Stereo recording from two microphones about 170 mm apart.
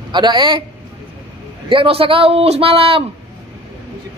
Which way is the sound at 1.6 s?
30° right (ahead or behind).